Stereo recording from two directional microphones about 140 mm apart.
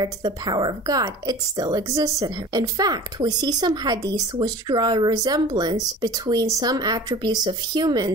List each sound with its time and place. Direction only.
0.0 s speech: 30° right (ahead or behind)